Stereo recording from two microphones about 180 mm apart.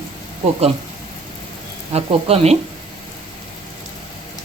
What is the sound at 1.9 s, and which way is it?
Speech, 35° right (ahead or behind).